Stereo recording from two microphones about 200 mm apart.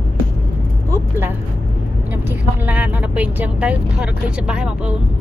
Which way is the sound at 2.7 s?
5° right (ahead or behind).